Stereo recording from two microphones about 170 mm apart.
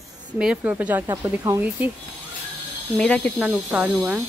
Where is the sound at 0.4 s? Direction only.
10° right (ahead or behind).